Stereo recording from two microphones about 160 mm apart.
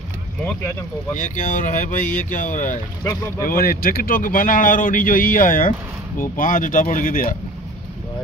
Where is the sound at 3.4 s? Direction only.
65° left (ahead or behind).